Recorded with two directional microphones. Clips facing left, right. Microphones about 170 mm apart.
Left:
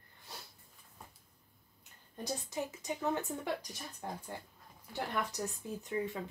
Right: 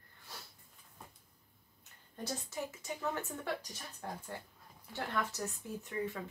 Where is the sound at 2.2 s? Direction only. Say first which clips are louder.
Left 2 dB; 15° left (ahead or behind).